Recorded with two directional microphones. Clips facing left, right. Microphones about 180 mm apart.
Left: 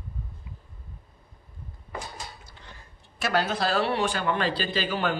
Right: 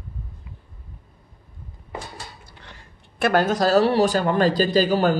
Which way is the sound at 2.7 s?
65° right (ahead or behind).